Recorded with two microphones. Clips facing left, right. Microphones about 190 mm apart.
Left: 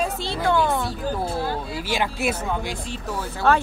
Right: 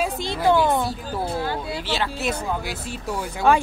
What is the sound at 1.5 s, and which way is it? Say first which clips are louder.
Speech: even; 5° left (ahead or behind).